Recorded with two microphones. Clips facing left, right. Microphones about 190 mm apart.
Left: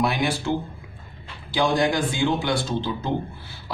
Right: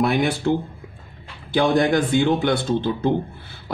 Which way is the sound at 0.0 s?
55° right (ahead or behind).